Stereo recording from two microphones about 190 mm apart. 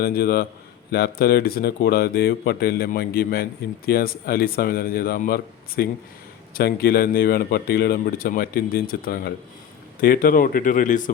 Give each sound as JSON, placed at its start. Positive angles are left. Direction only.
{"t": 0.0, "sound": "speech", "side_deg": 55}